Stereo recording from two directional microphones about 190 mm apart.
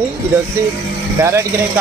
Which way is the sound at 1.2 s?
15° right (ahead or behind).